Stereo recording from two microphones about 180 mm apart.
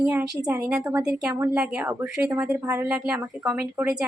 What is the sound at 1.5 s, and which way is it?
Speech, 5° right (ahead or behind).